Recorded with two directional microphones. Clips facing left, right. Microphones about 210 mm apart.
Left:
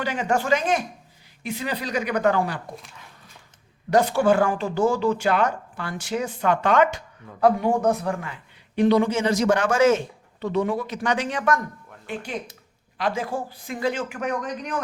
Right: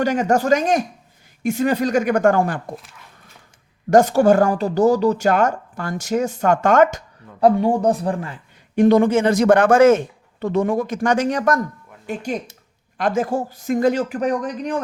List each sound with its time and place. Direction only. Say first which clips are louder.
0.0 s speech: right 6 dB; 45° right (ahead or behind)
3.8 s speech: right 6 dB; 45° right (ahead or behind)
7.4 s a man's voice: right 4 dB; 30° right (ahead or behind)
8.7 s speech: right 5 dB; 45° right (ahead or behind)